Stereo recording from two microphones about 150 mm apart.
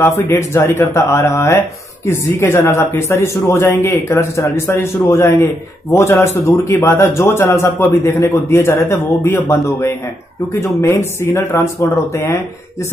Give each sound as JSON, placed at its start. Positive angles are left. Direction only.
{"t": 0.0, "sound": "speech", "side_deg": 20}